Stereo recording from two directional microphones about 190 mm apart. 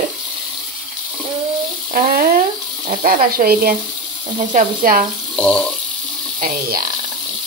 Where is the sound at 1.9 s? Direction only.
50° right (ahead or behind).